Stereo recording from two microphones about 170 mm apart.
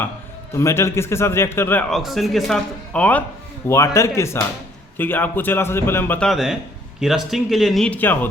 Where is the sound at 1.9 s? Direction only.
Centre (ahead or behind).